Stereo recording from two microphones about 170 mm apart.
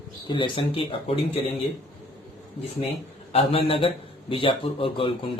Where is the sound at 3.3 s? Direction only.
35° left (ahead or behind).